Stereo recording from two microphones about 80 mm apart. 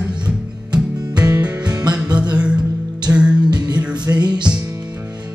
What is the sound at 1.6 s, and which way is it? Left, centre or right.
Music, right.